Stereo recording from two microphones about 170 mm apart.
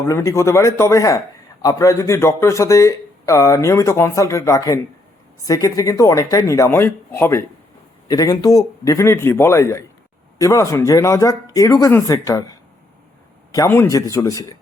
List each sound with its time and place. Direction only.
0.0 s speech: 15° left (ahead or behind)